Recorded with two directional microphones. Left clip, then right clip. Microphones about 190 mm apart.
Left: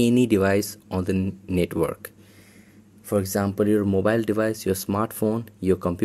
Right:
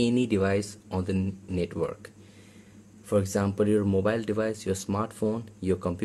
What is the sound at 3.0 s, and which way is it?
Speech, 25° left (ahead or behind).